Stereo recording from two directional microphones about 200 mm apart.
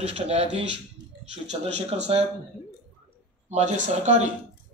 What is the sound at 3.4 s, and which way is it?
Speech, 35° right (ahead or behind).